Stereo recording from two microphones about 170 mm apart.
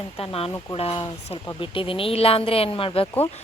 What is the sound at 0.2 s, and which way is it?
A woman's voice, 35° left (ahead or behind).